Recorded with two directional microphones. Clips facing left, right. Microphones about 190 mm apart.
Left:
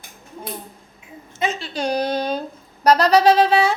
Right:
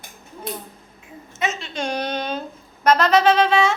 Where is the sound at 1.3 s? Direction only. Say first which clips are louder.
Left 2 dB; 35° left (ahead or behind).